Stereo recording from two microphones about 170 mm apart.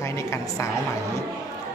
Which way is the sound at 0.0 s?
15° left (ahead or behind).